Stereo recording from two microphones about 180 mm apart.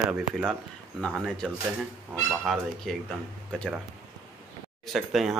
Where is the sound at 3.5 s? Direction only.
Centre (ahead or behind).